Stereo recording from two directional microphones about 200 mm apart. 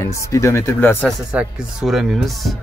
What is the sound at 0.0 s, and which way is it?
Speech, 15° left (ahead or behind).